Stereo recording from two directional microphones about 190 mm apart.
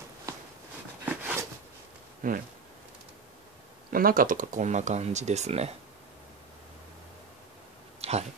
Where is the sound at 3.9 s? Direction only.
45° right (ahead or behind).